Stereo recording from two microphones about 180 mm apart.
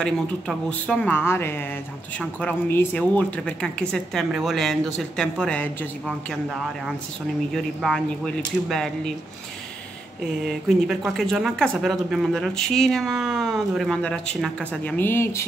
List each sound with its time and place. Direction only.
0.0 s speech: 5° left (ahead or behind)
7.5 s speech: centre (ahead or behind)
11.1 s speech: centre (ahead or behind)